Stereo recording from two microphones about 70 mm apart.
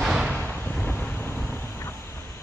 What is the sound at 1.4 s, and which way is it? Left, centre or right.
Vehicle, centre.